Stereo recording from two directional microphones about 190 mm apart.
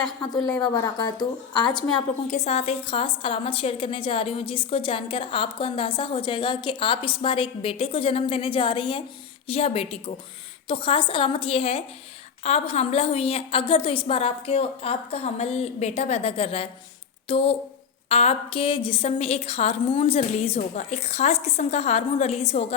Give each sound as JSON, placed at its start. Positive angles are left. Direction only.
{"t": 0.4, "sound": "a woman's voice", "side_deg": 20}
{"t": 2.2, "sound": "a woman's voice", "side_deg": 35}